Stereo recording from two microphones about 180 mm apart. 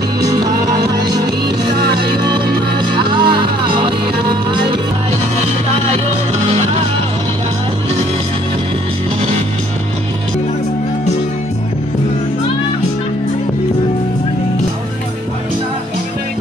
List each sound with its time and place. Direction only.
0.2 s music: 20° right (ahead or behind)
2.9 s music: 25° right (ahead or behind)